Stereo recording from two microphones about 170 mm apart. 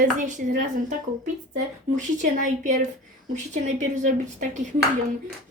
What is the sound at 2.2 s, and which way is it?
A woman's voice, 45° right (ahead or behind).